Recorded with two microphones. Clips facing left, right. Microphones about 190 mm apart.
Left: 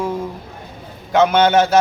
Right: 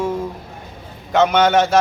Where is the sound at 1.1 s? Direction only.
Centre (ahead or behind).